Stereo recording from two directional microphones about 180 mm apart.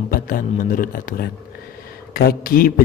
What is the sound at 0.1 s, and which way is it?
A man's voice, 50° left (ahead or behind).